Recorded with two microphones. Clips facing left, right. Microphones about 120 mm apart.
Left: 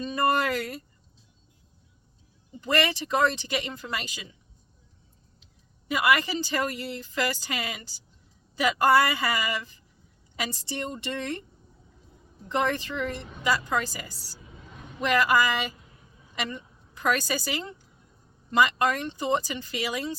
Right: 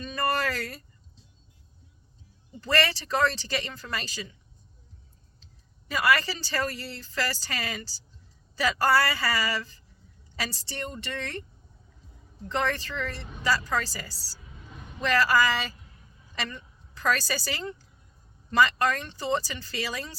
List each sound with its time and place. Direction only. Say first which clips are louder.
0.0 s a sound: left 3 dB; 20° left (ahead or behind)
2.6 s speech: left 1 dB; 15° left (ahead or behind)
5.9 s a woman's voice: left 1 dB; 15° left (ahead or behind)
12.5 s a woman's voice: left 2 dB; 15° left (ahead or behind)